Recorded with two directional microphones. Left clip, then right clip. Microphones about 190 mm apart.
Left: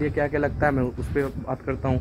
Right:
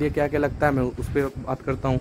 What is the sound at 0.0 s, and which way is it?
Speech, 10° right (ahead or behind).